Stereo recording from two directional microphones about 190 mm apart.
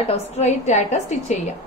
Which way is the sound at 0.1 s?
35° left (ahead or behind).